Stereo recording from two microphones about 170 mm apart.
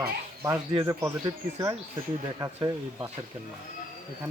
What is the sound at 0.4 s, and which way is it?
Speech, 25° right (ahead or behind).